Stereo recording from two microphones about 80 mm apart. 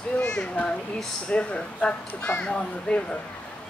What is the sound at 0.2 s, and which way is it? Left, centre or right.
Speech, centre.